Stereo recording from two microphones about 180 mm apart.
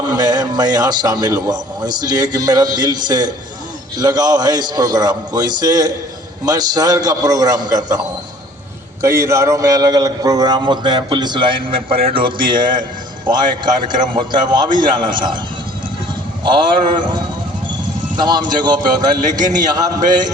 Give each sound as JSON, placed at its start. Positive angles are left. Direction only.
{"t": 0.1, "sound": "a man's voice", "side_deg": -20}
{"t": 13.8, "sound": "a man's voice", "side_deg": -25}
{"t": 16.4, "sound": "a man's voice", "side_deg": -25}
{"t": 18.2, "sound": "a man's voice", "side_deg": -25}